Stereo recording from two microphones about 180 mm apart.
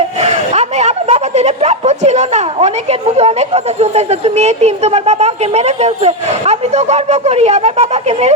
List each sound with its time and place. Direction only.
0.2 s speech: 35° right (ahead or behind)